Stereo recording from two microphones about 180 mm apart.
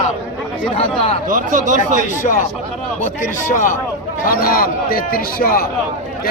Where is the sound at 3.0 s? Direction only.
50° left (ahead or behind).